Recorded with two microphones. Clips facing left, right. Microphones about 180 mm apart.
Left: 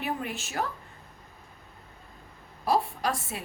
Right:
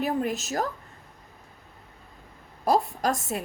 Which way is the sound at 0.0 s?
40° right (ahead or behind).